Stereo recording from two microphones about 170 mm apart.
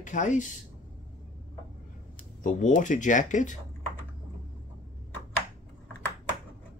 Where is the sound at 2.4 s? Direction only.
50° left (ahead or behind).